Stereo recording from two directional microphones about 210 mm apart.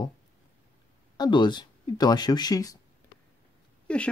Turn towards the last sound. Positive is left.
turn(degrees=5)  # may be behind; listen again after turning